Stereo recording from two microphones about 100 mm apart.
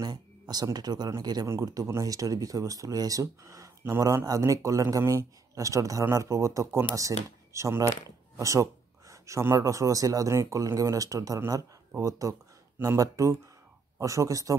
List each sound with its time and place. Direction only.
0.0 s speech: 40° right (ahead or behind)